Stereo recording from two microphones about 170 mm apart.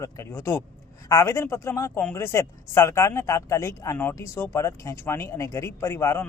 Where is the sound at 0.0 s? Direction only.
15° left (ahead or behind).